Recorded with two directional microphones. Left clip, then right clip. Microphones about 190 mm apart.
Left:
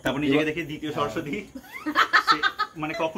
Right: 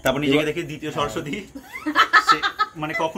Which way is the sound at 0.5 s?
55° right (ahead or behind).